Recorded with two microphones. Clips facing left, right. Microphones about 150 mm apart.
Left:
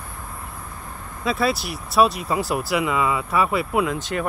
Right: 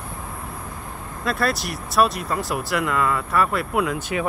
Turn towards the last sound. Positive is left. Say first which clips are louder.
# even
turn(degrees=0)  # may be behind; listen again after turning